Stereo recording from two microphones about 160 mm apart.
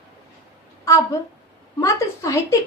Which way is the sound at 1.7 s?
20° left (ahead or behind).